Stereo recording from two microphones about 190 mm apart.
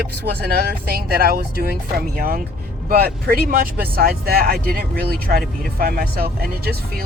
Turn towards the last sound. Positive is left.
turn(degrees=-55)  # may be behind; listen again after turning